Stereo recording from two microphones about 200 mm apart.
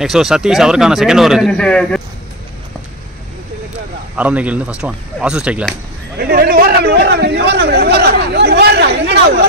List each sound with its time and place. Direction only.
0.0 s a man's voice: centre (ahead or behind)
4.2 s speech: 5° right (ahead or behind)
6.1 s a man's voice: 50° right (ahead or behind)